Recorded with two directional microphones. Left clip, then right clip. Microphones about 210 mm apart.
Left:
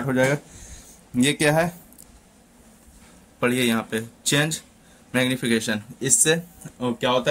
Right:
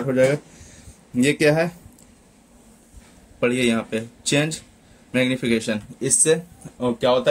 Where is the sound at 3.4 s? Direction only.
Centre (ahead or behind).